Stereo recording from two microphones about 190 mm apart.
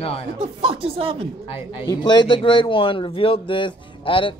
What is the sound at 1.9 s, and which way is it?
A man's voice, 25° left (ahead or behind).